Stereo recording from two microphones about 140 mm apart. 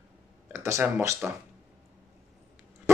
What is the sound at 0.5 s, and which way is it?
Speech, 20° right (ahead or behind).